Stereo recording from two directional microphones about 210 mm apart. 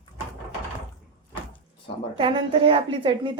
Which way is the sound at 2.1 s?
25° right (ahead or behind).